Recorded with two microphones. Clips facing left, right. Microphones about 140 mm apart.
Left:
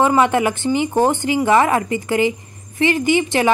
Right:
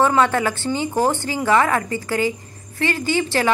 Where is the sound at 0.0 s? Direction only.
15° left (ahead or behind).